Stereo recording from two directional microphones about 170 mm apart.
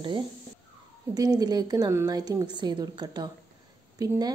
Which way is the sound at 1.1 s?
25° right (ahead or behind).